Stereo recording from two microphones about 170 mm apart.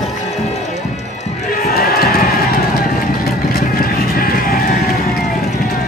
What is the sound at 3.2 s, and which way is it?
Vehicle, 65° left (ahead or behind).